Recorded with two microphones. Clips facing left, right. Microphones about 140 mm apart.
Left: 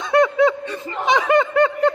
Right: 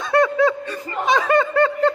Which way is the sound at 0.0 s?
20° left (ahead or behind).